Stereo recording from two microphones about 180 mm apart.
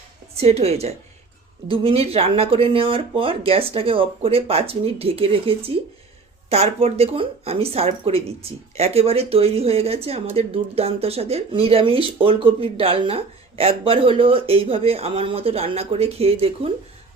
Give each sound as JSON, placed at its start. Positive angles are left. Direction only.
{"t": 0.3, "sound": "speech", "side_deg": -35}